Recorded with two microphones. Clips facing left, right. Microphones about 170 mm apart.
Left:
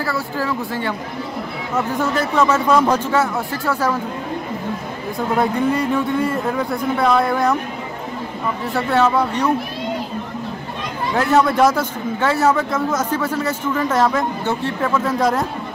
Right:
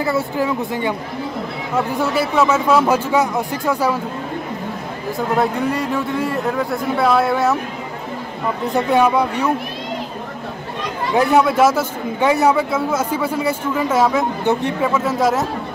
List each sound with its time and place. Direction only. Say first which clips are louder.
0.0 s a man's voice: right 4 dB; 20° right (ahead or behind)
5.4 s a man's voice: left 3 dB; centre (ahead or behind)
8.7 s a man's voice: right 2 dB; 15° right (ahead or behind)
11.1 s a man's voice: right 1 dB; 10° right (ahead or behind)
14.9 s a man's voice: even; 5° right (ahead or behind)